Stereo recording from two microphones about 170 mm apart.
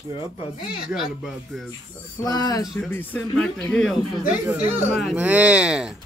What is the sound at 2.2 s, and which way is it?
Speech, 25° left (ahead or behind).